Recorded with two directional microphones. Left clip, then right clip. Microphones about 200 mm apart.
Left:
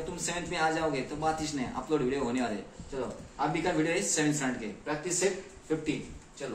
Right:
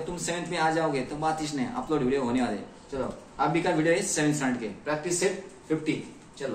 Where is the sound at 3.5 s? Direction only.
20° left (ahead or behind).